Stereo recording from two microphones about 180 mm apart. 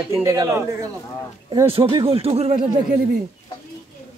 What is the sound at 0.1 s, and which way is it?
Speech, 15° right (ahead or behind).